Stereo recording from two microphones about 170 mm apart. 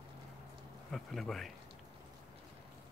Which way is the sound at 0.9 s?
Centre (ahead or behind).